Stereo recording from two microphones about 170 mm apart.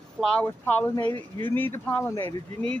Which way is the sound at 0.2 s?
5° left (ahead or behind).